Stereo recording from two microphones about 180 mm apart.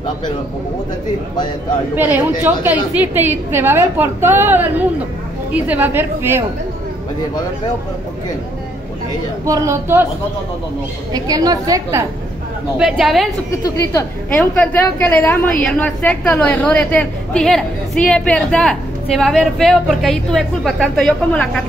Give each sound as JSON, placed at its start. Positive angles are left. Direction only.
{"t": 2.0, "sound": "a woman's voice", "side_deg": -10}
{"t": 9.5, "sound": "a woman's voice", "side_deg": -15}
{"t": 11.1, "sound": "a woman's voice", "side_deg": -20}
{"t": 12.7, "sound": "a woman's voice", "side_deg": -5}
{"t": 13.6, "sound": "a woman's voice", "side_deg": 20}